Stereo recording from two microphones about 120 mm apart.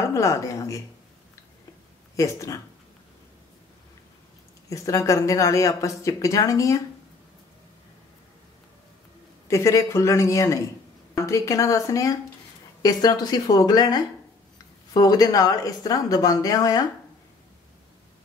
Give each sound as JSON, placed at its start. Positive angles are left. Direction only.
{"t": 0.0, "sound": "speech", "side_deg": 25}
{"t": 2.1, "sound": "speech", "side_deg": 25}
{"t": 4.6, "sound": "speech", "side_deg": 25}
{"t": 9.5, "sound": "a woman's voice", "side_deg": 25}